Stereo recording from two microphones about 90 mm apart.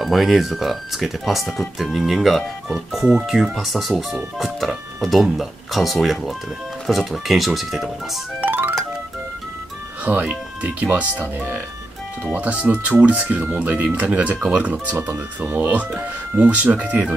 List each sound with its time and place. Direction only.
0.0 s speech: centre (ahead or behind)
8.4 s music: 20° right (ahead or behind)
10.0 s speech: 15° right (ahead or behind)
15.0 s speech: 25° right (ahead or behind)